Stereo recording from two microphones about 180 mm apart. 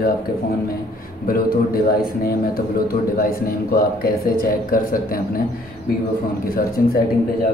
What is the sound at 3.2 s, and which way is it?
Speech, 55° left (ahead or behind).